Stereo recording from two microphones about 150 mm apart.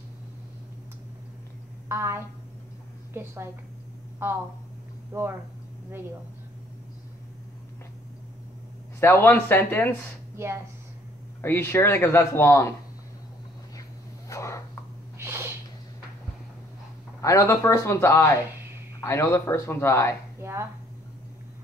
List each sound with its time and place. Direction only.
1.9 s a woman's voice: 15° right (ahead or behind)
5.1 s a woman's voice: 15° right (ahead or behind)
9.0 s speech: 15° left (ahead or behind)
10.3 s speech: 15° right (ahead or behind)
11.4 s speech: 15° left (ahead or behind)
14.3 s a sound: 20° left (ahead or behind)
15.1 s a sound: 15° right (ahead or behind)
17.2 s speech: 20° left (ahead or behind)
20.3 s speech: 15° right (ahead or behind)